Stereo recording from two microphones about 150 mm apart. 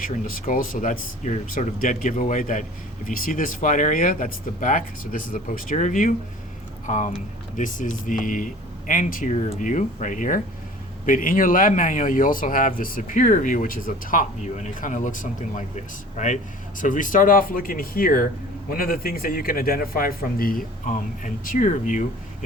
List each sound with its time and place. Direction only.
0.0 s a man's voice: 70° left (ahead or behind)